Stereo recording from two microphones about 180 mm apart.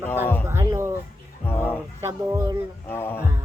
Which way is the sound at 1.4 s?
10° left (ahead or behind).